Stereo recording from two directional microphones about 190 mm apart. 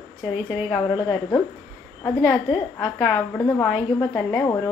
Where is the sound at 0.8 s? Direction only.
20° left (ahead or behind); by 4.5 s 5° left (ahead or behind).